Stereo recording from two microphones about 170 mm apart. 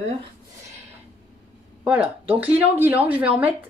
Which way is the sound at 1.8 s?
10° right (ahead or behind).